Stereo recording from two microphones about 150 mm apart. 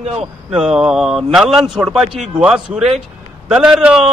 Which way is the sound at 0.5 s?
5° right (ahead or behind).